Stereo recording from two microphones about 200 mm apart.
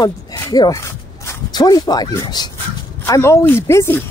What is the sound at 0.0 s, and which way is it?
Speech, 20° left (ahead or behind).